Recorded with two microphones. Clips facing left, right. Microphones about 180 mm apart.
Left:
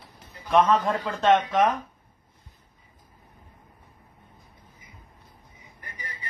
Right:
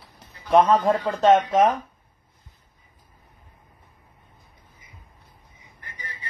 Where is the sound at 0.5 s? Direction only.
35° right (ahead or behind).